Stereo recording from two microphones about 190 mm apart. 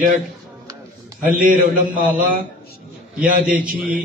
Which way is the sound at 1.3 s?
45° right (ahead or behind).